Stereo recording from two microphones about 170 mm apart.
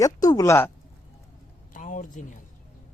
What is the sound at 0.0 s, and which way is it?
Speech, 20° left (ahead or behind).